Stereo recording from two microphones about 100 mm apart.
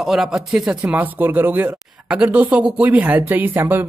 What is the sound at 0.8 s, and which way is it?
Speech, 20° right (ahead or behind).